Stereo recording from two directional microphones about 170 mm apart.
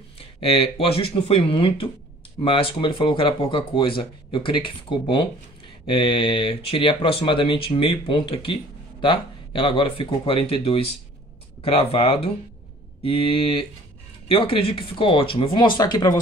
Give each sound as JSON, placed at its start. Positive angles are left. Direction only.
{"t": 0.4, "sound": "speech", "side_deg": 35}